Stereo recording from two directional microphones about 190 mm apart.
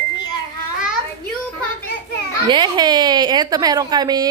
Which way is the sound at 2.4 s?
25° right (ahead or behind).